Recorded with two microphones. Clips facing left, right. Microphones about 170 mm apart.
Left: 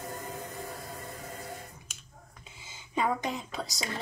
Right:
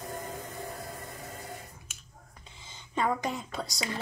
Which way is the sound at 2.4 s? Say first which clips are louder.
Right 1 dB; 10° left (ahead or behind).